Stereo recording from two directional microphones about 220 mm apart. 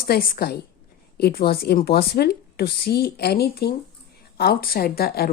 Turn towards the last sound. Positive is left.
turn(degrees=45)  # may be behind; listen again after turning